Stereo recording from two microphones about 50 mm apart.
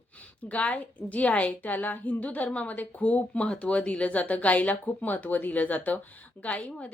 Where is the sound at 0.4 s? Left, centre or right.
Left.